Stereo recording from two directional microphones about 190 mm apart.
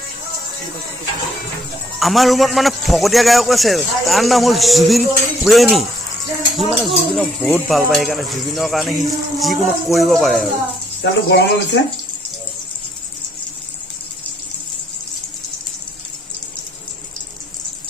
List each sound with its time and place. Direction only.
2.0 s speech: centre (ahead or behind)
11.0 s speech: 60° left (ahead or behind)